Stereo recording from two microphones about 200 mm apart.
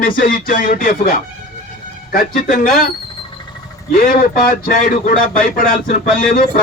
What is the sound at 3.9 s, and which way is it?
Speech, 45° left (ahead or behind).